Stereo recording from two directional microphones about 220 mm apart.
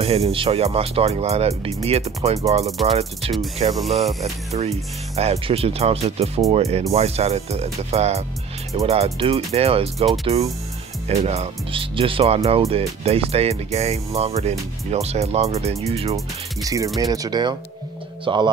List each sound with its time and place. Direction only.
0.0 s speech: 25° right (ahead or behind)
16.6 s speech: 15° right (ahead or behind)